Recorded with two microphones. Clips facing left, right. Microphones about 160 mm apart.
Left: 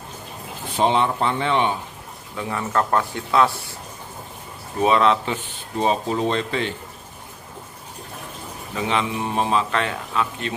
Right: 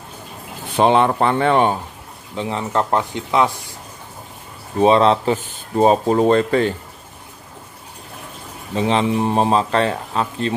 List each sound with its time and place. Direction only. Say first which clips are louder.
0.7 s speech: right 5 dB; 60° right (ahead or behind)
2.3 s speech: right 3 dB; 20° right (ahead or behind)
4.7 s speech: right 4 dB; 30° right (ahead or behind); by 6.7 s 45° right (ahead or behind)
8.7 s speech: right 6 dB; 35° right (ahead or behind)